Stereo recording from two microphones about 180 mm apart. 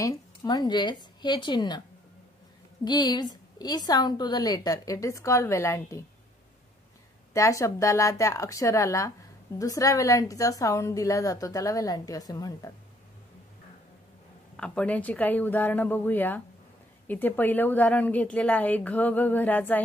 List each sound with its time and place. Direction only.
0.0 s a woman's voice: 20° left (ahead or behind)
2.8 s a woman's voice: 25° left (ahead or behind)
7.3 s a woman's voice: 15° left (ahead or behind)
14.6 s a woman's voice: 5° left (ahead or behind)